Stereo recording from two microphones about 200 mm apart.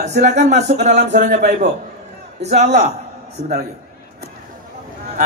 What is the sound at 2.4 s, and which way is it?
Speech, 35° right (ahead or behind).